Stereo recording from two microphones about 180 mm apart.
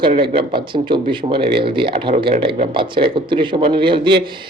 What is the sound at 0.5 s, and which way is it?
A man's voice, 25° right (ahead or behind).